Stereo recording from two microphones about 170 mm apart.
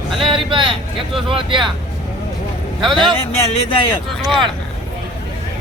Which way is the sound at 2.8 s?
Centre (ahead or behind).